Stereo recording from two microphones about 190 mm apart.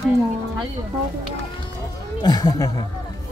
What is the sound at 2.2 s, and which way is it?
Speech, 20° left (ahead or behind).